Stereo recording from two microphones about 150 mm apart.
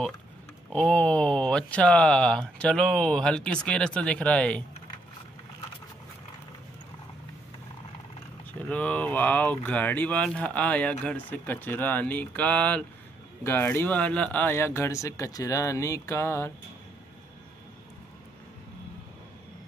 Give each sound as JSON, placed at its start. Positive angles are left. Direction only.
{"t": 0.7, "sound": "speech", "side_deg": 10}
{"t": 8.6, "sound": "speech", "side_deg": 10}